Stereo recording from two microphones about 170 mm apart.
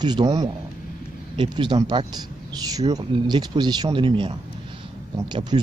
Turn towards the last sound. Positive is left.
turn(degrees=-30)  # may be behind; listen again after turning